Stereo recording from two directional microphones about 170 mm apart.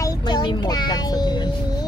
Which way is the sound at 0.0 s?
20° left (ahead or behind).